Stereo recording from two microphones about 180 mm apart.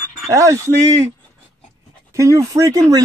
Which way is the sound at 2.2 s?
15° right (ahead or behind).